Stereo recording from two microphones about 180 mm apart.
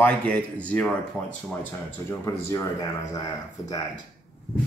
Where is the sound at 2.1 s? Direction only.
15° left (ahead or behind).